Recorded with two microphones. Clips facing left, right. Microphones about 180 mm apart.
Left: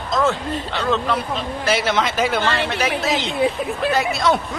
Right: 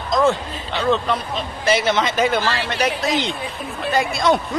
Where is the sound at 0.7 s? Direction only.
10° right (ahead or behind).